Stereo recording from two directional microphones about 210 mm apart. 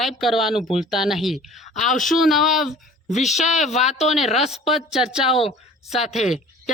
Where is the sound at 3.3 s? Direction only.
35° left (ahead or behind).